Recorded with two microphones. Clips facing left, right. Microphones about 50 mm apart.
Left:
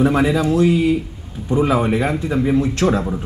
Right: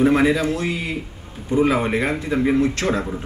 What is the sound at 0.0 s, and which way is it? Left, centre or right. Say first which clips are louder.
Speech: left 1 dB; right.